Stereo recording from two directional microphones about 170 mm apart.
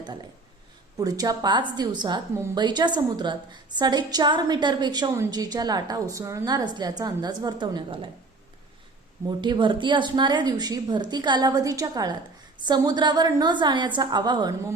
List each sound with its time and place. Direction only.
0.9 s a woman's voice: 20° right (ahead or behind)
9.2 s a woman's voice: 25° right (ahead or behind)